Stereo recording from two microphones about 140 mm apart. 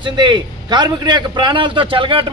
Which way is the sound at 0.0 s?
35° right (ahead or behind).